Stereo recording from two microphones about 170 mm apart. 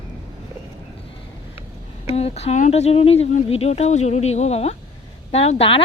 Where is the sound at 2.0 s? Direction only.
35° left (ahead or behind).